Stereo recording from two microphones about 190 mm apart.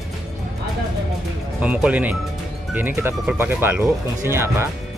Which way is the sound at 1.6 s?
5° right (ahead or behind).